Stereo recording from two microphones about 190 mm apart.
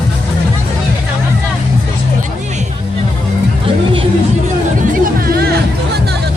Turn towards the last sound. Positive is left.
turn(degrees=-50)  # may be behind; listen again after turning